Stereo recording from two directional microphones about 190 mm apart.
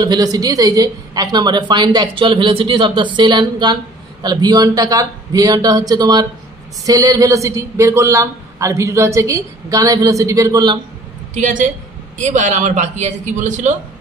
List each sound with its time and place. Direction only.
0.0 s a woman's voice: 20° right (ahead or behind)
11.3 s speech: 40° right (ahead or behind)